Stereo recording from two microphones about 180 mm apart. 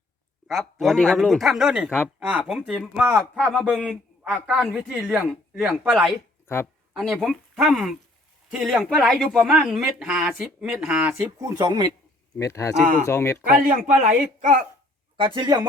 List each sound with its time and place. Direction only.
0.4 s speech: centre (ahead or behind)
3.3 s a man's voice: 5° left (ahead or behind); by 11.9 s 25° right (ahead or behind)
12.4 s speech: 15° left (ahead or behind)
13.7 s speech: 50° right (ahead or behind)
15.2 s speech: 25° right (ahead or behind)